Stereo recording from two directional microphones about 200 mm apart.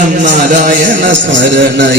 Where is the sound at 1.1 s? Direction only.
65° right (ahead or behind).